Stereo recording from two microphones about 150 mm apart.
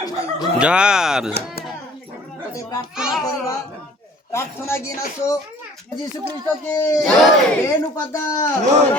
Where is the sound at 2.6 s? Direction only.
20° left (ahead or behind).